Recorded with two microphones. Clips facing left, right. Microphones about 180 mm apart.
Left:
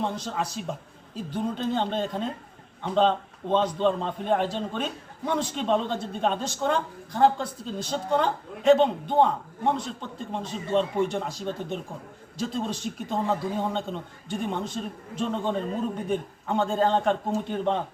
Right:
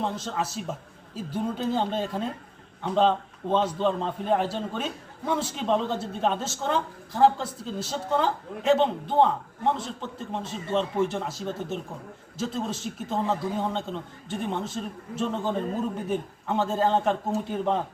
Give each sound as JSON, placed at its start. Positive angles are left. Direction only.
{"t": 0.0, "sound": "a man's voice", "side_deg": 0}